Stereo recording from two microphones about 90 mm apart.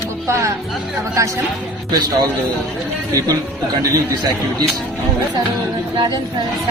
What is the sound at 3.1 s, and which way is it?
Speech, 40° right (ahead or behind).